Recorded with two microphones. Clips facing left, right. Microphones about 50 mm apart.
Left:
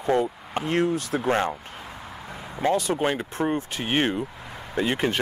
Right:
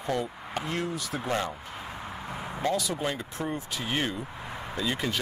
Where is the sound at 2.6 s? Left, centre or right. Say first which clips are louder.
Left 6 dB; left.